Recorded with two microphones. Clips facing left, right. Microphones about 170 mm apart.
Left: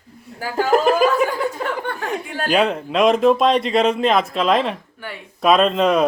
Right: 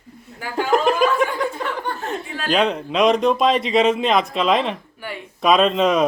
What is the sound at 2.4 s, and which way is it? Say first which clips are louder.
Speech: left 1 dB; 5° left (ahead or behind).